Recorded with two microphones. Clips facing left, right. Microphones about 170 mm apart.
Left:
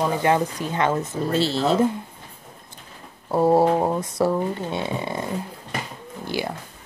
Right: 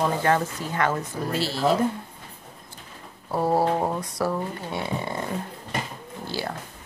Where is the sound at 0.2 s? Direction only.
20° left (ahead or behind).